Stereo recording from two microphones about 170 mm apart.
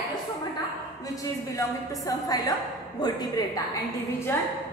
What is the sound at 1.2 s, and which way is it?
A woman's voice, 20° left (ahead or behind).